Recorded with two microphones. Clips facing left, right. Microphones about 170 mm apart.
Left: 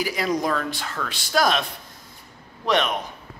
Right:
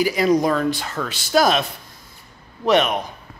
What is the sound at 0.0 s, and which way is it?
A man's voice, centre (ahead or behind).